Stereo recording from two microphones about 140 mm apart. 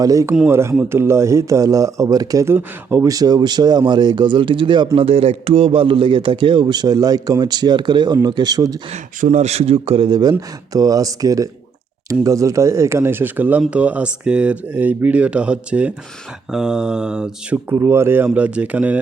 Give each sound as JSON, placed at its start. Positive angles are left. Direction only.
{"t": 0.0, "sound": "speech", "side_deg": -25}
{"t": 8.9, "sound": "speech", "side_deg": -55}
{"t": 17.7, "sound": "speech", "side_deg": -15}